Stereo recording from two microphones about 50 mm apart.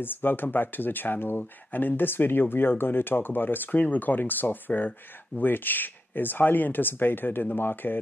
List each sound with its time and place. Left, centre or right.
0.0 s speech: left